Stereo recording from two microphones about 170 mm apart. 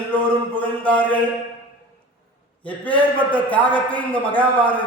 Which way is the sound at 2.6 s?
10° left (ahead or behind).